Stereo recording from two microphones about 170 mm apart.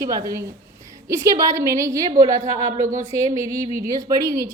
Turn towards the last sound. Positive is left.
turn(degrees=-20)  # may be behind; listen again after turning